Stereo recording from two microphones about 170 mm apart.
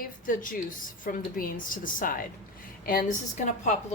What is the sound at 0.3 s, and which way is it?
A woman's voice, 50° left (ahead or behind).